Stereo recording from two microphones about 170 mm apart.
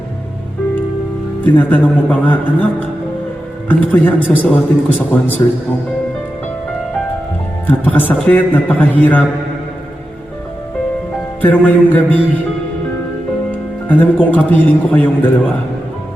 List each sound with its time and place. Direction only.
1.5 s a man's voice: 10° left (ahead or behind)
3.7 s a man's voice: 10° left (ahead or behind)
7.7 s a man's voice: 10° left (ahead or behind)
11.4 s a man's voice: 10° left (ahead or behind)
13.8 s a man's voice: 10° left (ahead or behind)